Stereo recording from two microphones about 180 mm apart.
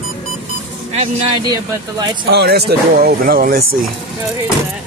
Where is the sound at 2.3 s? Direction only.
65° right (ahead or behind).